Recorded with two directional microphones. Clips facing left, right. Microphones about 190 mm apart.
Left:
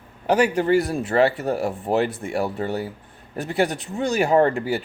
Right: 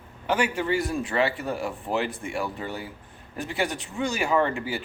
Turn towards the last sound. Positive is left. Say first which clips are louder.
# left 6 dB
turn(degrees=45)  # may be behind; listen again after turning